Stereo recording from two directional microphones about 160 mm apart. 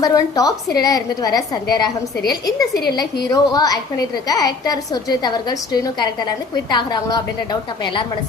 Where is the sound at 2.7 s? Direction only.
80° left.